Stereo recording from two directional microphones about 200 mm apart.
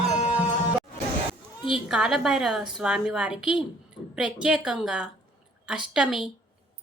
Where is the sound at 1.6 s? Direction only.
25° left (ahead or behind).